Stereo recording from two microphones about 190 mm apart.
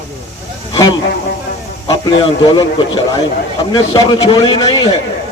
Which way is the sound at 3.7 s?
20° left (ahead or behind).